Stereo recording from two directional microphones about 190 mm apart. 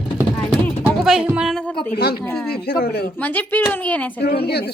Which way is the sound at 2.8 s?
55° left (ahead or behind).